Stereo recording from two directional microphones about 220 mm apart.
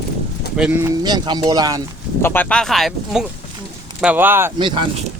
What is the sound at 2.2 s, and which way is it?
Speech, 10° left (ahead or behind).